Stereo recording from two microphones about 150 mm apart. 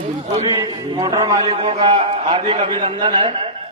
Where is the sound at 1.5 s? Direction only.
35° right (ahead or behind).